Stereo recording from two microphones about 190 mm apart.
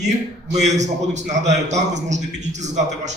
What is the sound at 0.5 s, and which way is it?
A man's voice, 40° right (ahead or behind).